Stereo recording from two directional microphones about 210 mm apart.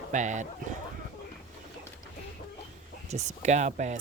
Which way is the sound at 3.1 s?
35° right (ahead or behind).